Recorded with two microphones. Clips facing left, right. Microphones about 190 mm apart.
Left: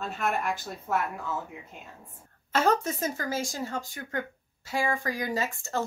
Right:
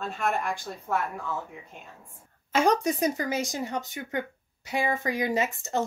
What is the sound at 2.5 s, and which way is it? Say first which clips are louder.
Speech: right 2 dB; 15° right (ahead or behind).